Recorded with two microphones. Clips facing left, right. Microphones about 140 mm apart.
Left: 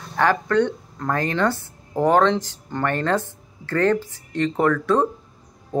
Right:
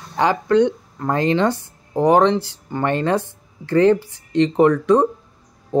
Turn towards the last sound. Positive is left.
turn(degrees=-15)  # may be behind; listen again after turning